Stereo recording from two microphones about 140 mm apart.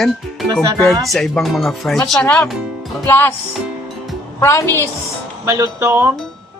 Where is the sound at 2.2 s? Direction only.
10° left (ahead or behind).